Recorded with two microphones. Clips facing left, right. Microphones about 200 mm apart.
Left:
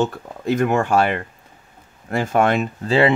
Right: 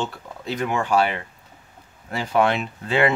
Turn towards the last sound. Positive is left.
turn(degrees=35)  # may be behind; listen again after turning